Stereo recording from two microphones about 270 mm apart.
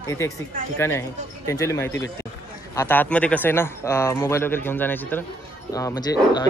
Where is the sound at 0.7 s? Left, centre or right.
Centre.